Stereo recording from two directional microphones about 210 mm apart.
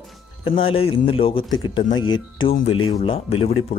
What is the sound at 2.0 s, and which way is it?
Speech, 70° left (ahead or behind).